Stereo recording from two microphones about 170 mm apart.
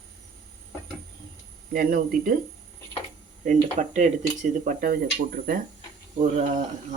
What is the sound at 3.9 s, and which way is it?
Speech, 45° right (ahead or behind).